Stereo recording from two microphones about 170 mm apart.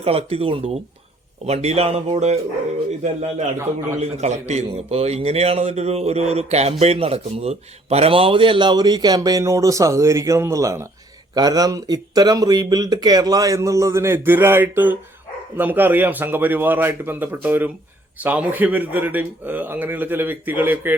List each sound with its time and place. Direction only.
0.0 s a man's voice: 35° right (ahead or behind); by 20.9 s 10° right (ahead or behind)